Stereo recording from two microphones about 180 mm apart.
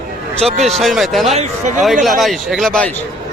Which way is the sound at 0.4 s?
Centre (ahead or behind).